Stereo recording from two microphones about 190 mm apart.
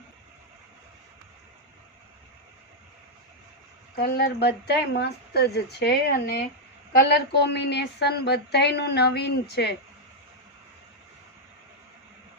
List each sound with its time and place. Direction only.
3.9 s a woman's voice: 55° left (ahead or behind)